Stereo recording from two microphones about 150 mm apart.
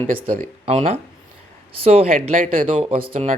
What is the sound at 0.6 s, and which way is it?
Speech, 45° right (ahead or behind).